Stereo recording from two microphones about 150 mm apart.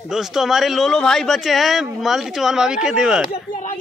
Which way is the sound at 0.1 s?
Centre (ahead or behind).